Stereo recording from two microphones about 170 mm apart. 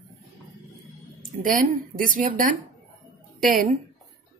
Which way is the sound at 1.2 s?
55° right (ahead or behind).